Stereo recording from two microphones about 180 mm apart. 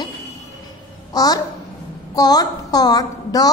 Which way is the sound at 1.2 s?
20° left (ahead or behind).